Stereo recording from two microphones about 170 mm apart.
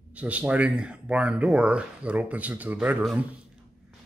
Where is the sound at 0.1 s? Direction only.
10° right (ahead or behind).